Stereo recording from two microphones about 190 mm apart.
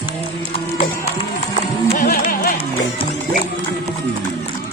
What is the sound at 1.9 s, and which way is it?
Music, 45° left (ahead or behind).